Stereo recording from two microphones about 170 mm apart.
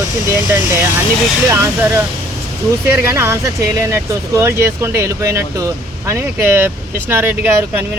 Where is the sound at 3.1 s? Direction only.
15° right (ahead or behind).